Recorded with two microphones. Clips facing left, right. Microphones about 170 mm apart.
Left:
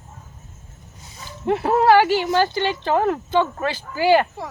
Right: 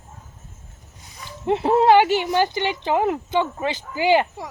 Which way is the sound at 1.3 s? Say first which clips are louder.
Right 1 dB; 20° right (ahead or behind).